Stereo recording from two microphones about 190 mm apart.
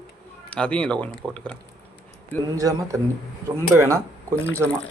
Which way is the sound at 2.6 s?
20° right (ahead or behind).